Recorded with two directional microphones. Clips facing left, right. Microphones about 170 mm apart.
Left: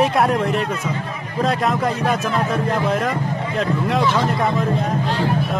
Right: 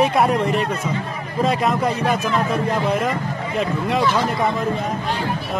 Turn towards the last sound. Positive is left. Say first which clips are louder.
# left 1 dB
turn(degrees=0)  # may be behind; listen again after turning